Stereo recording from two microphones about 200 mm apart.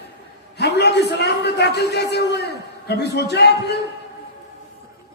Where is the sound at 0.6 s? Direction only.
55° left (ahead or behind).